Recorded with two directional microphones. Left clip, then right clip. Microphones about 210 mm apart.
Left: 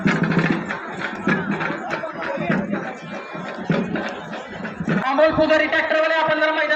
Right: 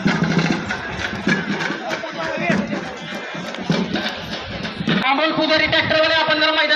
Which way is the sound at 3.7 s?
50° right (ahead or behind).